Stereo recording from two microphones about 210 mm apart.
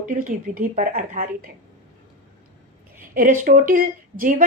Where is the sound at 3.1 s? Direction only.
40° right (ahead or behind).